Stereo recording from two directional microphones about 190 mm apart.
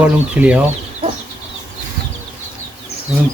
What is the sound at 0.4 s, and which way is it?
Speech, 10° right (ahead or behind).